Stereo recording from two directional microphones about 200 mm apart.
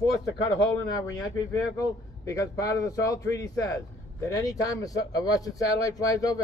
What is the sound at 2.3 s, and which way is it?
Speech, 15° left (ahead or behind).